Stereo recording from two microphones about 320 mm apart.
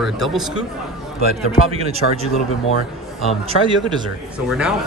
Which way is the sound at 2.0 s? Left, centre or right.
Left.